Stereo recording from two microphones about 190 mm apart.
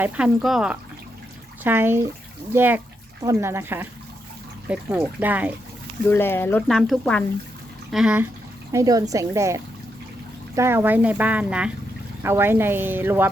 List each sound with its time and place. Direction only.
0.0 s speech: 5° right (ahead or behind)
6.1 s speech: 10° left (ahead or behind); by 8.3 s 5° right (ahead or behind)
8.7 s speech: 20° right (ahead or behind)